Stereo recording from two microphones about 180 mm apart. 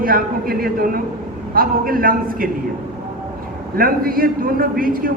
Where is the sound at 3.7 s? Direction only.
55° right (ahead or behind).